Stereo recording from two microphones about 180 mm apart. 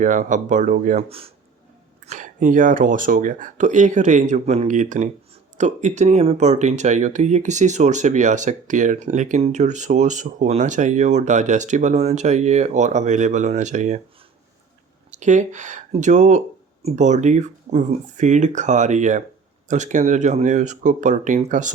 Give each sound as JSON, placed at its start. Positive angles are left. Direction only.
{"t": 0.0, "sound": "speech", "side_deg": -45}
{"t": 15.1, "sound": "speech", "side_deg": -45}